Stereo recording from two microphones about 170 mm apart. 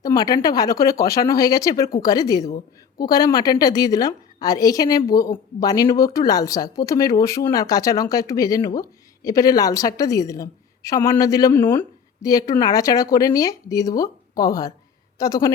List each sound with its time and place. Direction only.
0.0 s a woman's voice: 20° left (ahead or behind)